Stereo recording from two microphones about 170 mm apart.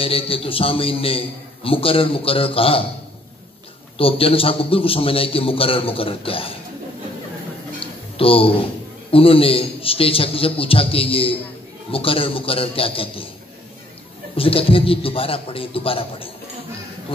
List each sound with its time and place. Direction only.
0.0 s a man's voice: 35° left (ahead or behind)
4.0 s a man's voice: 35° left (ahead or behind)
7.8 s a sound: 35° left (ahead or behind)
9.1 s a man's voice: 35° left (ahead or behind)
14.3 s a man's voice: 35° left (ahead or behind)